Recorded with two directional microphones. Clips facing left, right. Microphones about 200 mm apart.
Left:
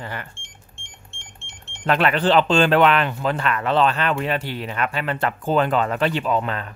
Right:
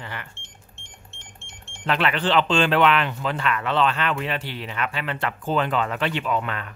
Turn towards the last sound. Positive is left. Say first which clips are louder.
# left 3 dB
turn(degrees=35)  # may be behind; listen again after turning